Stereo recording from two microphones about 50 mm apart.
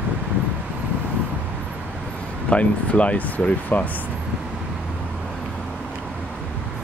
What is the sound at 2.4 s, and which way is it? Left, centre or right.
Speech, left.